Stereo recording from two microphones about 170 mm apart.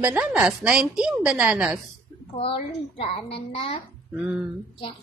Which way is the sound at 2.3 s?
35° left (ahead or behind).